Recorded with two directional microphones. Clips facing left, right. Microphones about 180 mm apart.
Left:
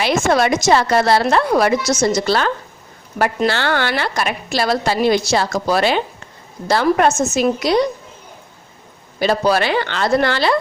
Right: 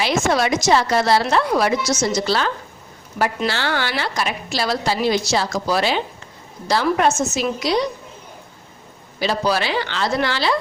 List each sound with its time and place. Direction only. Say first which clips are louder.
0.0 s a woman's voice: left 3 dB; 55° left (ahead or behind)
9.1 s a woman's voice: left 4 dB; 50° left (ahead or behind)